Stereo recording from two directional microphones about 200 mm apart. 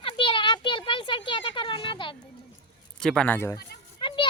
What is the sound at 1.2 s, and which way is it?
Speech, 25° left (ahead or behind).